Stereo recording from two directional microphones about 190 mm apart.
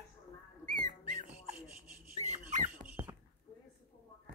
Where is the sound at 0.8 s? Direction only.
45° right (ahead or behind).